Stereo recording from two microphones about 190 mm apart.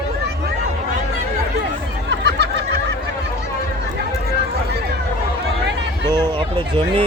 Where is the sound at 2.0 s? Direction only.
60° right (ahead or behind).